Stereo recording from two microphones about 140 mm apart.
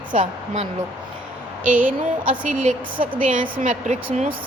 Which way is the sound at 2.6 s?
75° right (ahead or behind).